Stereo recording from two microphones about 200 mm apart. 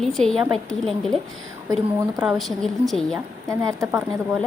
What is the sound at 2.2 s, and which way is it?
A woman's voice, centre (ahead or behind).